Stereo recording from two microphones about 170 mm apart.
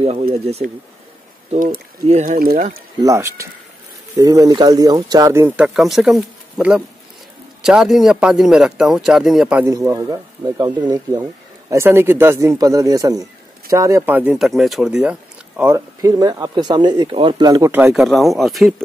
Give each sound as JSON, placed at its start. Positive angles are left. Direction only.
{"t": 0.6, "sound": "speech", "side_deg": -55}
{"t": 2.3, "sound": "speech", "side_deg": -55}
{"t": 3.0, "sound": "a man's voice", "side_deg": -20}
{"t": 9.7, "sound": "speech", "side_deg": -20}